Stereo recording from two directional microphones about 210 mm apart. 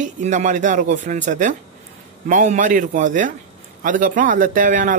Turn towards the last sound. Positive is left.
turn(degrees=-40)  # may be behind; listen again after turning